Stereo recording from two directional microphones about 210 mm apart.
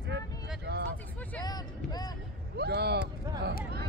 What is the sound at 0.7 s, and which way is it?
Speech, 50° right (ahead or behind).